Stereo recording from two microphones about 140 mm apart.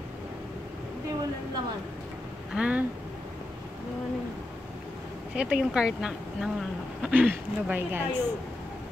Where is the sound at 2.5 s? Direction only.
10° right (ahead or behind).